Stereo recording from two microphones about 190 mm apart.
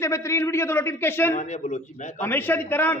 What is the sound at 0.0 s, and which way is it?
A man's voice, 15° left (ahead or behind).